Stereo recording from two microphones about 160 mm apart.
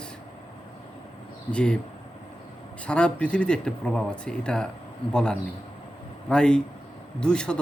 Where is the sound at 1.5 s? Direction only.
5° left (ahead or behind).